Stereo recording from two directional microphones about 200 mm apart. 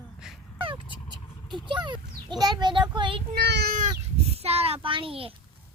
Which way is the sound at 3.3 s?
55° right (ahead or behind).